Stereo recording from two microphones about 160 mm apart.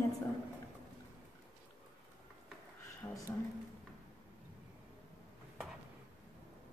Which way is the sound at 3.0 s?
15° left (ahead or behind).